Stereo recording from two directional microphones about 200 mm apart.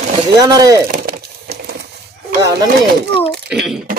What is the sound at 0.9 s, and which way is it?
Wood, 50° right (ahead or behind).